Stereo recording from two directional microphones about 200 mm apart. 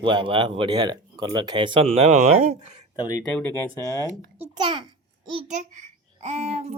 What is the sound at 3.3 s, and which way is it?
Speech, 10° left (ahead or behind).